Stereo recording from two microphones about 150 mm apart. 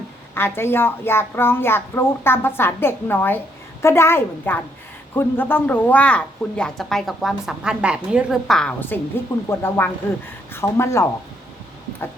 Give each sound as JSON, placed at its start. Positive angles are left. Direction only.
{"t": 0.3, "sound": "a woman's voice", "side_deg": 15}